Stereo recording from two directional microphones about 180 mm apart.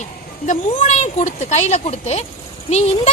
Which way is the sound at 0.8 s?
40° left (ahead or behind).